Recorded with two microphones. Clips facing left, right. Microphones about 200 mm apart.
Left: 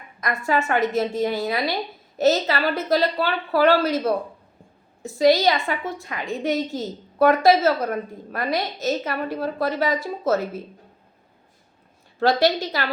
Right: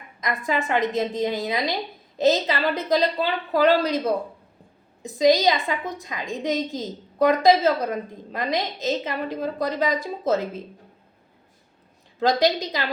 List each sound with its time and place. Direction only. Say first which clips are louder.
0.2 s a woman's voice: left 2 dB; 15° right (ahead or behind)
12.2 s a woman's voice: left 1 dB; 15° right (ahead or behind)